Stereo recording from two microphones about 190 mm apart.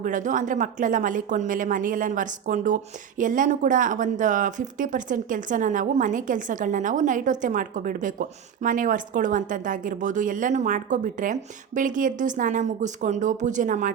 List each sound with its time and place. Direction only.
0.0 s speech: 40° right (ahead or behind)